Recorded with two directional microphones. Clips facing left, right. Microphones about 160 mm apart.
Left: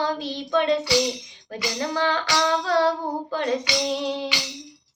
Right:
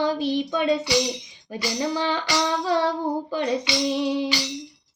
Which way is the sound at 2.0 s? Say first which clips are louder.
Left 1 dB; 15° right (ahead or behind).